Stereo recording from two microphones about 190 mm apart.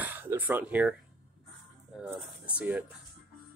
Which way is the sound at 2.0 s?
5° right (ahead or behind).